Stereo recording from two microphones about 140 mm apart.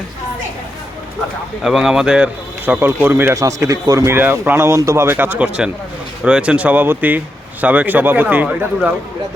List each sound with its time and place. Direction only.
1.6 s speech: 5° right (ahead or behind)